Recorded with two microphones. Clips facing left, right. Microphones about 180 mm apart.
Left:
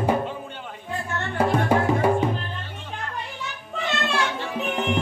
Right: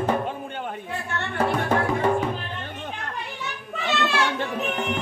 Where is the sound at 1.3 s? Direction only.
10° left (ahead or behind).